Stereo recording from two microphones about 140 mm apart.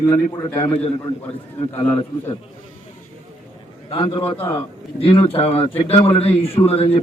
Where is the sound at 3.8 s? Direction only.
40° left (ahead or behind).